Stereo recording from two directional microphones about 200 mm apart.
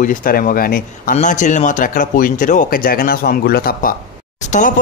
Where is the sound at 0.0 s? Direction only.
45° left (ahead or behind).